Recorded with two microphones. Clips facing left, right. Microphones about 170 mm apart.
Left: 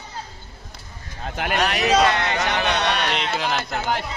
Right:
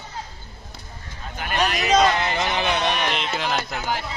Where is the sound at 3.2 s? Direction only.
Centre (ahead or behind).